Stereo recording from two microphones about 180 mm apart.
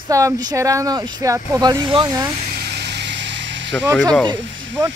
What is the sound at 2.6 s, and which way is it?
Vehicle, 65° right (ahead or behind).